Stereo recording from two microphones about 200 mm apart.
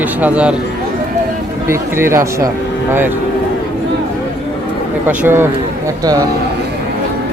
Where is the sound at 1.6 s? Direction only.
15° right (ahead or behind).